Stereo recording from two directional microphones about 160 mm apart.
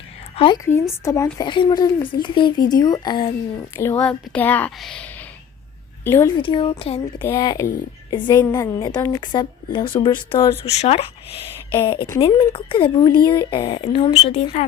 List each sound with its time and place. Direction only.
0.3 s a woman's voice: 30° left (ahead or behind)
0.6 s speech: 15° left (ahead or behind)
3.8 s speech: 15° left (ahead or behind)
6.1 s speech: 15° left (ahead or behind)
6.4 s a woman's voice: 35° left (ahead or behind)
7.3 s speech: 20° left (ahead or behind)
10.7 s a woman's voice: 40° left (ahead or behind)
14.1 s a woman's voice: 45° left (ahead or behind)